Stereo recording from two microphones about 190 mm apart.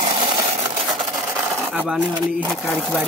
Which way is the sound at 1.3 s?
10° right (ahead or behind).